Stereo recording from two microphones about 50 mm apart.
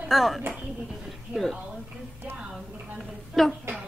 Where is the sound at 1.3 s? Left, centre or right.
Centre.